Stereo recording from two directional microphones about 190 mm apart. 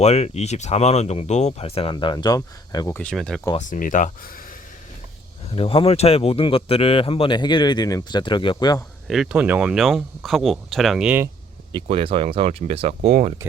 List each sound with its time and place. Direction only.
0.0 s speech: 35° left (ahead or behind); by 3.4 s 5° left (ahead or behind)
3.6 s speech: 45° left (ahead or behind)
5.5 s speech: 30° left (ahead or behind)
9.0 s speech: centre (ahead or behind)
11.7 s speech: 30° right (ahead or behind)
13.0 s speech: 55° right (ahead or behind)